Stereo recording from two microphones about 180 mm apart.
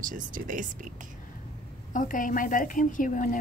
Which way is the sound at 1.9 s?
50° left (ahead or behind).